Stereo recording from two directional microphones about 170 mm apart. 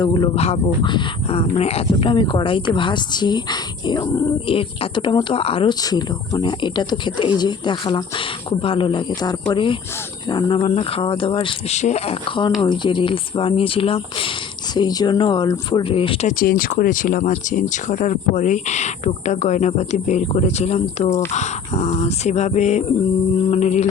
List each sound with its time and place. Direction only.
0.0 s speech: 25° left (ahead or behind)
0.3 s speech: 35° left (ahead or behind)
16.2 s speech: 55° left (ahead or behind); by 23.9 s 40° left (ahead or behind)